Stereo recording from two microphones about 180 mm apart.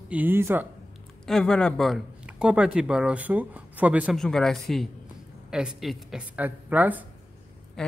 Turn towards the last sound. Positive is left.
turn(degrees=-10)  # may be behind; listen again after turning